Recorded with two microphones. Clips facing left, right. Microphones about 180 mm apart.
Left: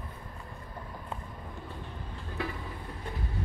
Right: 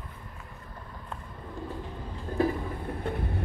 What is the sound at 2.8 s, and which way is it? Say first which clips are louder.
Vehicle: right 9 dB; 60° right (ahead or behind).